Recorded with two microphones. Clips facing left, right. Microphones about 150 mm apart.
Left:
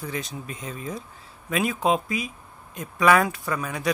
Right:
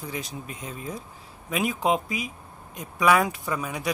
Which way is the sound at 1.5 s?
15° right (ahead or behind).